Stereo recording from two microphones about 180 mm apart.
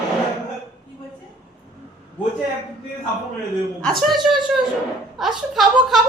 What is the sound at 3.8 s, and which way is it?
A woman's voice, 5° left (ahead or behind).